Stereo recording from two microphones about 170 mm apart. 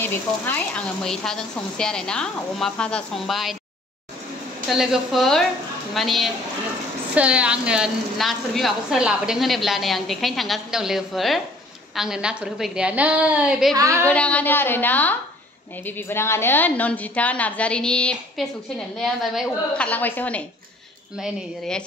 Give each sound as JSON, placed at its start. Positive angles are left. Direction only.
{"t": 0.0, "sound": "a woman's voice", "side_deg": 10}
{"t": 4.6, "sound": "a woman's voice", "side_deg": 0}
{"t": 13.7, "sound": "speech", "side_deg": -20}
{"t": 14.0, "sound": "a woman's voice", "side_deg": 5}